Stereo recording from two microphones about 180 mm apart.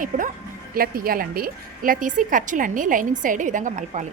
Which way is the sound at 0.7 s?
55° right (ahead or behind).